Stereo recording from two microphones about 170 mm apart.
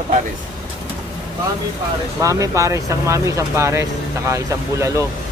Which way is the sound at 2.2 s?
20° right (ahead or behind).